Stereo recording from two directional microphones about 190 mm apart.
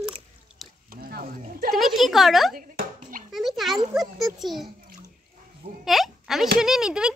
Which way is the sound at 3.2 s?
Centre (ahead or behind).